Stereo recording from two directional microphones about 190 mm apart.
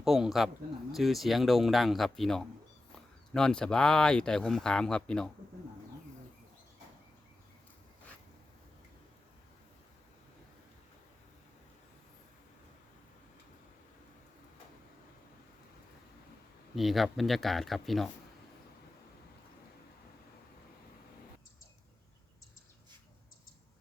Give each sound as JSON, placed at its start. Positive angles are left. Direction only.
{"t": 0.0, "sound": "speech", "side_deg": 0}
{"t": 16.7, "sound": "speech", "side_deg": 0}